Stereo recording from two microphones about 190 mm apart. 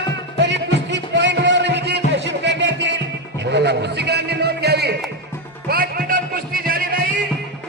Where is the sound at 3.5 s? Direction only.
65° right (ahead or behind).